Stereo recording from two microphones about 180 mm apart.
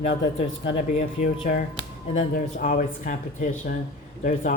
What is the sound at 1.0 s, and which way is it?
Speech, 45° left (ahead or behind).